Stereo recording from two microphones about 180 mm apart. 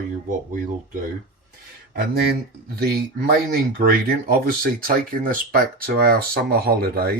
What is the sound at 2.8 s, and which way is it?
Speech, 60° right (ahead or behind).